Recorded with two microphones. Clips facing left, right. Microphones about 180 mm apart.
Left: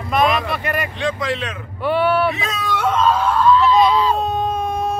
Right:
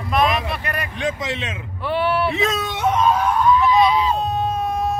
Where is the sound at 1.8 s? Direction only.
Centre (ahead or behind).